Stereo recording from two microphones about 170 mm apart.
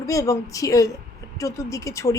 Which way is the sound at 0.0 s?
20° left (ahead or behind).